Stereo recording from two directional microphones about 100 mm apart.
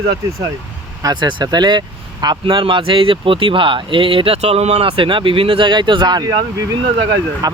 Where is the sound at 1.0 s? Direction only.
45° right (ahead or behind).